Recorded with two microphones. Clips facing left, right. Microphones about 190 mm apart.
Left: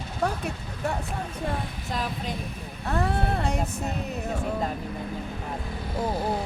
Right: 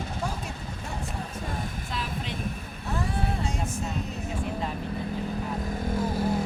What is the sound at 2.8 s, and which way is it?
Speech, 60° left (ahead or behind).